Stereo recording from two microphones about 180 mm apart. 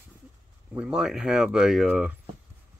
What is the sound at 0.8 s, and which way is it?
Speech, 5° right (ahead or behind).